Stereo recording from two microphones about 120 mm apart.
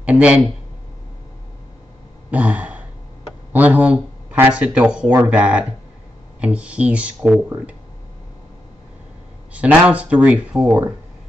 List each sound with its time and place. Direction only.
0.0 s speech: 10° right (ahead or behind)
2.3 s a sound: 10° right (ahead or behind)
3.5 s speech: 15° right (ahead or behind)
9.5 s speech: 10° right (ahead or behind)